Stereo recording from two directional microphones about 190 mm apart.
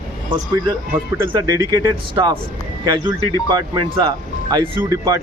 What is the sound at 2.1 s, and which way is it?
Speech, 25° right (ahead or behind).